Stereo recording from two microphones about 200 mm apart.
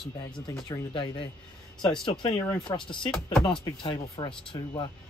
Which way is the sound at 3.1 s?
Centre (ahead or behind).